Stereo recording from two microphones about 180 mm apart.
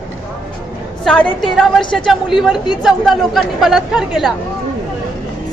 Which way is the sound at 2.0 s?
Centre (ahead or behind).